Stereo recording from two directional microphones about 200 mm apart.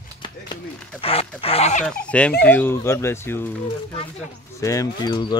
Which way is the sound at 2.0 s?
5° left (ahead or behind).